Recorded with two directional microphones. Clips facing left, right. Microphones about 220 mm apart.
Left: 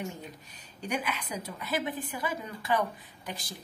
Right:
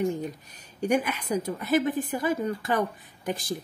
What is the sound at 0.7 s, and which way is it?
A woman's voice, 50° right (ahead or behind).